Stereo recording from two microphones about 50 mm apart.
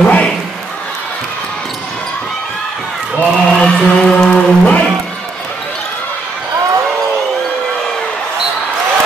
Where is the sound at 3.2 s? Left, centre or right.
Centre.